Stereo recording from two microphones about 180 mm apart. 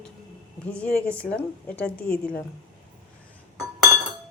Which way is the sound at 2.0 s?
55° left (ahead or behind).